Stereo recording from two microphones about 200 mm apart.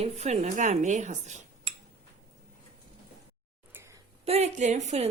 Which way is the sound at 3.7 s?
15° right (ahead or behind).